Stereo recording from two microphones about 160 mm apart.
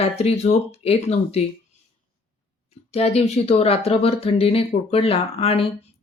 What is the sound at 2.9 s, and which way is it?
Speech, 40° left (ahead or behind).